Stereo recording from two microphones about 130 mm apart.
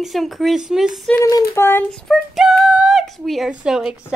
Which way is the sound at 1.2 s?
25° left (ahead or behind).